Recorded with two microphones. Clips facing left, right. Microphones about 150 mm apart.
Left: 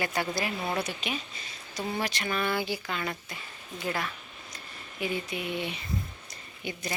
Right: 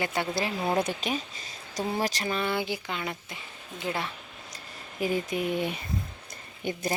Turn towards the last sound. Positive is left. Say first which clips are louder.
# right 5 dB
turn(degrees=-45)  # may be behind; listen again after turning